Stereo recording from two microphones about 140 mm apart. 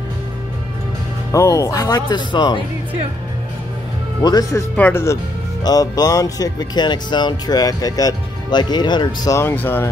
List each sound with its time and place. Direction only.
1.3 s speech: 20° left (ahead or behind)
4.2 s speech: 25° left (ahead or behind)
4.7 s speech: 15° left (ahead or behind)